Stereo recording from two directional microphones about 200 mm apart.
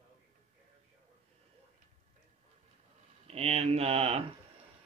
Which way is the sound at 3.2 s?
30° right (ahead or behind).